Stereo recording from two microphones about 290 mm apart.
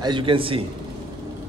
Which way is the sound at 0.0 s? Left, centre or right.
Centre.